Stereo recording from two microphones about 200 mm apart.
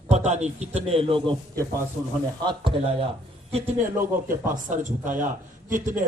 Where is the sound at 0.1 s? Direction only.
35° right (ahead or behind).